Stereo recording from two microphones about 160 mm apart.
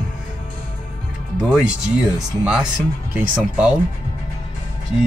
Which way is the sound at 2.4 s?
5° right (ahead or behind).